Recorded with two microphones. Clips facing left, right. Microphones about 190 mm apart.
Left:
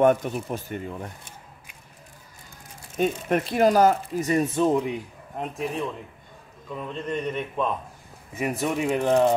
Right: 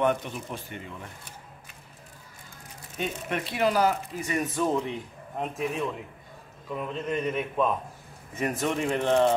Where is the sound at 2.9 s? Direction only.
45° left (ahead or behind); by 5.0 s 15° left (ahead or behind).